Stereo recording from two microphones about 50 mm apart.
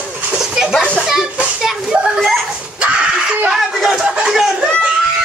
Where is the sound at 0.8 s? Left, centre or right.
Left.